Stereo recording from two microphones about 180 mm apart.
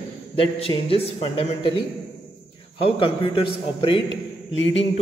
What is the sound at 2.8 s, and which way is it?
A man's voice, 30° left (ahead or behind).